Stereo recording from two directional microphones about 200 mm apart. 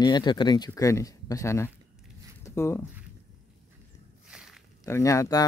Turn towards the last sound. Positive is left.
turn(degrees=15)  # may be behind; listen again after turning